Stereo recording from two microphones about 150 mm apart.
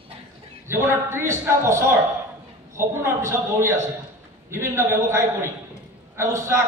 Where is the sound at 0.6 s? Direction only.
15° right (ahead or behind).